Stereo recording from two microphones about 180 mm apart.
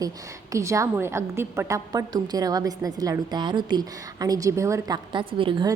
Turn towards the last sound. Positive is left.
turn(degrees=-25)  # may be behind; listen again after turning